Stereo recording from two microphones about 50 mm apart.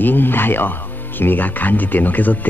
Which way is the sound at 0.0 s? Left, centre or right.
Left.